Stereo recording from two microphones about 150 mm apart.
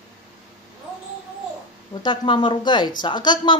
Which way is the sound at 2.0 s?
35° left (ahead or behind).